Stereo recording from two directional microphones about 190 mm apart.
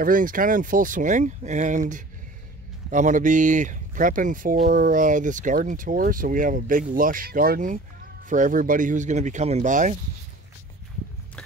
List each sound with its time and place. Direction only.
0.0 s speech: 45° right (ahead or behind)
2.9 s speech: 40° right (ahead or behind)